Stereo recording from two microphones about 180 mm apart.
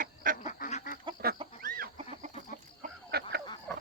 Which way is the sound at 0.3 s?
40° left (ahead or behind).